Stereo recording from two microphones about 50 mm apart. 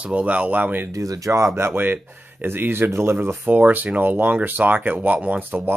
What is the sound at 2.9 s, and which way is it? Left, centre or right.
Speech, right.